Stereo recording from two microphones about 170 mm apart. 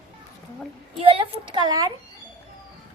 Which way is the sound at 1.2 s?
30° right (ahead or behind).